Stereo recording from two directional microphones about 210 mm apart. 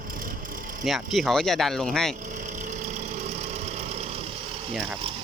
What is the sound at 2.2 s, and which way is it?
Engine, 35° right (ahead or behind).